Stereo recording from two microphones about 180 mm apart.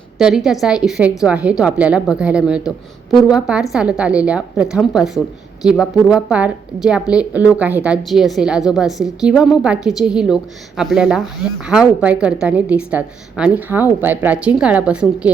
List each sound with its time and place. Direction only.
0.2 s a woman's voice: 5° right (ahead or behind)